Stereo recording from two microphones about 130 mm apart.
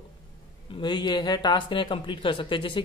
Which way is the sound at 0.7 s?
35° left (ahead or behind).